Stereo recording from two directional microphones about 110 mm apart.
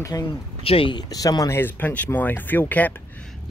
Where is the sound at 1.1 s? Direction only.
35° left (ahead or behind).